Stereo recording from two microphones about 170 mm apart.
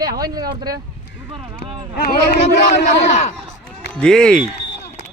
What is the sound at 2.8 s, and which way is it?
Speech, 40° left (ahead or behind).